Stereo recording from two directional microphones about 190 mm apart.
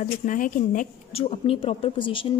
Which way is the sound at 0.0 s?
45° left (ahead or behind).